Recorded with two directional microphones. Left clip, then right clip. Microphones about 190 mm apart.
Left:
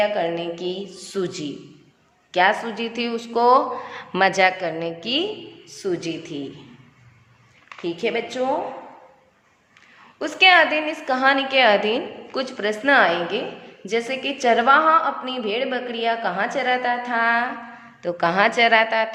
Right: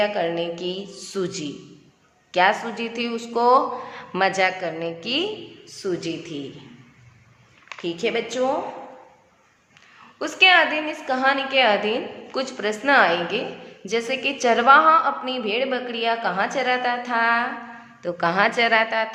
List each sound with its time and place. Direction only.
0.0 s a woman's voice: 10° left (ahead or behind)
7.8 s a woman's voice: 10° left (ahead or behind)
10.2 s a woman's voice: 10° left (ahead or behind)